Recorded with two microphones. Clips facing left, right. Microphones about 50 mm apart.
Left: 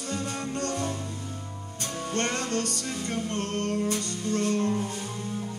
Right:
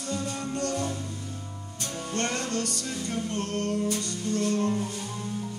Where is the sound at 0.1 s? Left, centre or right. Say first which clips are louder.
Right 1 dB; left.